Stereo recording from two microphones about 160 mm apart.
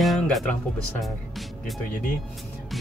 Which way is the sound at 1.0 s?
Centre (ahead or behind).